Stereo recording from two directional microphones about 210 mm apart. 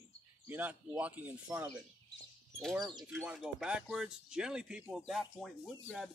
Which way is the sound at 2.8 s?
20° right (ahead or behind).